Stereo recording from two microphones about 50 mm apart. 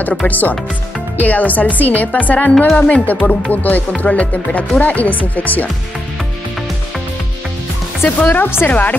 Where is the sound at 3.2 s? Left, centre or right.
Centre.